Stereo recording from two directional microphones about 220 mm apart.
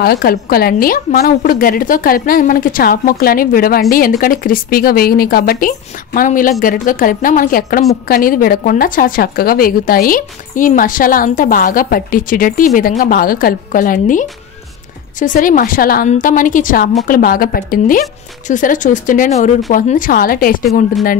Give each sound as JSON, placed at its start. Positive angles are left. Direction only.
{"t": 0.0, "sound": "a woman's voice", "side_deg": 45}